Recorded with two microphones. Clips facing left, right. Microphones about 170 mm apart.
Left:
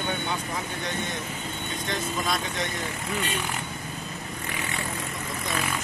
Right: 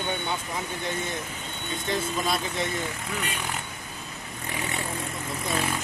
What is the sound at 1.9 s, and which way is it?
Speech, 5° right (ahead or behind).